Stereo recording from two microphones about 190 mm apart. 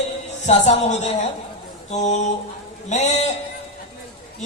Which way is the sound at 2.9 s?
35° left (ahead or behind).